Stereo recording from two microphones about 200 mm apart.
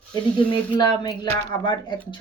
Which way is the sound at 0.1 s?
20° left (ahead or behind).